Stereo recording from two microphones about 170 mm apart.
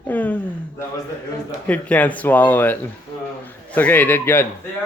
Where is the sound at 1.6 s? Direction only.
10° left (ahead or behind).